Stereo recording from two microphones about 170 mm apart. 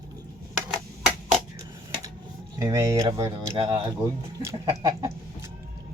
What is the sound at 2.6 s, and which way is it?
Speech, 20° right (ahead or behind).